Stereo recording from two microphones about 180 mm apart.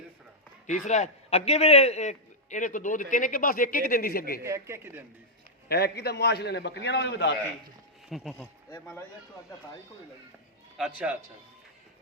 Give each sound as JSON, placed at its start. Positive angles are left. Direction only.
{"t": 0.7, "sound": "a man's voice", "side_deg": 40}
{"t": 4.4, "sound": "speech", "side_deg": -15}
{"t": 5.6, "sound": "a man's voice", "side_deg": 60}
{"t": 8.1, "sound": "speech", "side_deg": 0}
{"t": 8.4, "sound": "speech", "side_deg": 10}
{"t": 10.8, "sound": "speech", "side_deg": -5}